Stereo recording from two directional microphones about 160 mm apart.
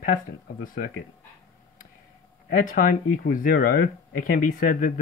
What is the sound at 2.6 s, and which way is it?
Speech, 55° left (ahead or behind).